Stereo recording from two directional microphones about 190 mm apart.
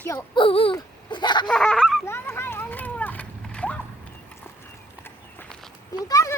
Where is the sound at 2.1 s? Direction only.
10° left (ahead or behind).